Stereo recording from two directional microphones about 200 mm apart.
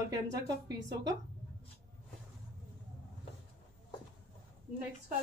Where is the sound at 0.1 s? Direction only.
20° right (ahead or behind).